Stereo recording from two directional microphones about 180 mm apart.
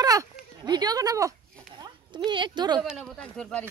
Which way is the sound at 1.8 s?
25° right (ahead or behind).